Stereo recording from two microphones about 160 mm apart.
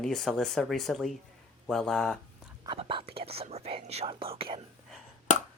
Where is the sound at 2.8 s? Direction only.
35° right (ahead or behind).